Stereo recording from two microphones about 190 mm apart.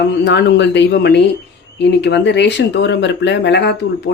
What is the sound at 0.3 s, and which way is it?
Speech, 65° left (ahead or behind).